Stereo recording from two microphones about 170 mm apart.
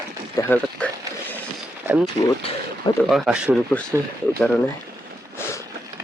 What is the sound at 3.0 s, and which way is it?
Speech, centre (ahead or behind).